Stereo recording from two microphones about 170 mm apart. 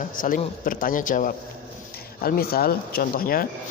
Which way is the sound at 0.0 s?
50° left (ahead or behind).